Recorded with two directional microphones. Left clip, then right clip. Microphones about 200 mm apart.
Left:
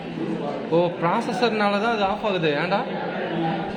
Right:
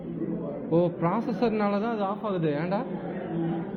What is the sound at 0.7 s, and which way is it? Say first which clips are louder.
Speech: left 4 dB; centre (ahead or behind).